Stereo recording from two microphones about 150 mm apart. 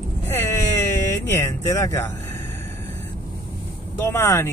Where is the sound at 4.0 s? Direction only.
15° left (ahead or behind).